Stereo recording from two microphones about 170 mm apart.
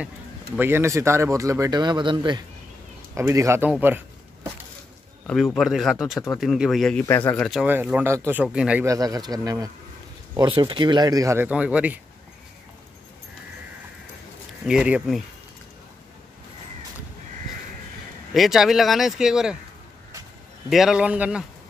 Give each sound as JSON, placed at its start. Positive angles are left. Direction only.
{"t": 0.6, "sound": "speech", "side_deg": -15}
{"t": 3.2, "sound": "speech", "side_deg": -15}
{"t": 3.8, "sound": "a sound", "side_deg": -10}
{"t": 5.2, "sound": "speech", "side_deg": 0}
{"t": 7.1, "sound": "speech", "side_deg": 10}
{"t": 7.6, "sound": "speech", "side_deg": -10}
{"t": 8.8, "sound": "speech", "side_deg": -20}
{"t": 14.6, "sound": "speech", "side_deg": -5}
{"t": 18.3, "sound": "speech", "side_deg": 0}
{"t": 20.7, "sound": "speech", "side_deg": -5}